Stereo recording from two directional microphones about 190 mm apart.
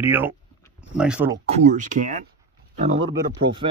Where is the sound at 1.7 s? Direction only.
40° right (ahead or behind).